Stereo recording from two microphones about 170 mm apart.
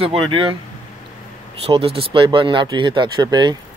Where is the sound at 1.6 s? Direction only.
35° right (ahead or behind).